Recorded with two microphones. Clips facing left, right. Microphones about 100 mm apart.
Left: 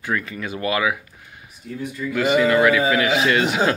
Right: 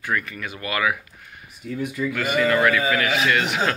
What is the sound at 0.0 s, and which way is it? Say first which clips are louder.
Speech: left 1 dB; 25° left (ahead or behind).